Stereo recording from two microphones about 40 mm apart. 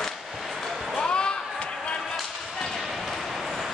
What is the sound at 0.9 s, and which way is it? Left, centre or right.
Basketball bounce, left.